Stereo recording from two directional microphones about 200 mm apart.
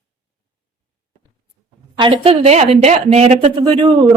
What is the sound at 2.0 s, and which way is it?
Speech, 25° right (ahead or behind).